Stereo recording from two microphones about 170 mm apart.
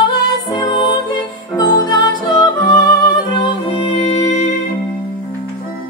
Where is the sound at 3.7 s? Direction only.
35° left (ahead or behind).